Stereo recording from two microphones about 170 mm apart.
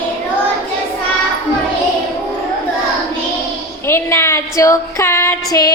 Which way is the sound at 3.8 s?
15° left (ahead or behind).